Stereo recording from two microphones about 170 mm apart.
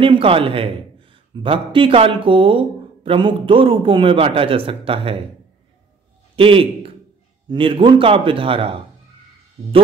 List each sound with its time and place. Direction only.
0.0 s a man's voice: 30° right (ahead or behind)
6.3 s a man's voice: 30° right (ahead or behind)